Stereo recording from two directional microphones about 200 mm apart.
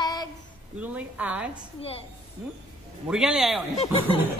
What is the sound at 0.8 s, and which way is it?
Speech, 5° right (ahead or behind).